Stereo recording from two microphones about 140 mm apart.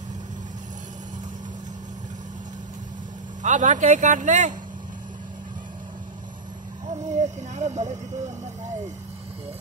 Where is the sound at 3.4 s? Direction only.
60° right (ahead or behind).